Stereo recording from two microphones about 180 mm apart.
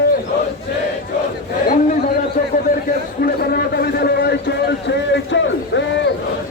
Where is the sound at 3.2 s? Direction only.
60° left (ahead or behind); by 6.0 s 85° left.